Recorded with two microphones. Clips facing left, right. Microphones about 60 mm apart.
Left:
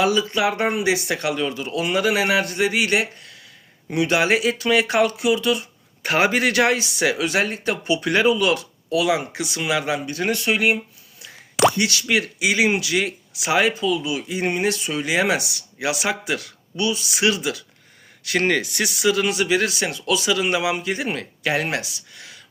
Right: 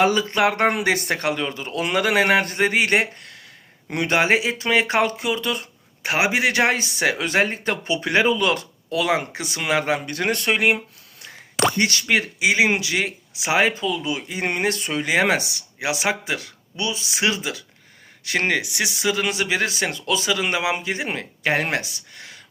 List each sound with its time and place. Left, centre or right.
0.0 s speech: right
6.0 s speech: centre
6.5 s speech: right
8.3 s speech: right
11.8 s speech: right
12.2 s speech: right
19.0 s speech: right